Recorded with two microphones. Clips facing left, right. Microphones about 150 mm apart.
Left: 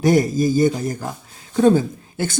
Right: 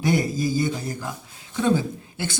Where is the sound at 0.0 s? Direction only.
45° left (ahead or behind).